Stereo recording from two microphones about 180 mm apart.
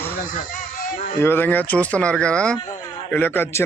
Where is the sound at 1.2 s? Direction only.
10° left (ahead or behind).